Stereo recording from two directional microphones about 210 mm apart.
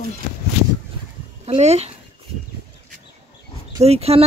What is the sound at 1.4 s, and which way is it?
Speech, 30° right (ahead or behind).